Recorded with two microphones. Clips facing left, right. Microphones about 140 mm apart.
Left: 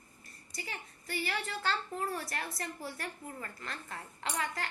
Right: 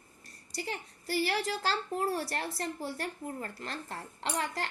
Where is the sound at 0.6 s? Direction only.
35° right (ahead or behind).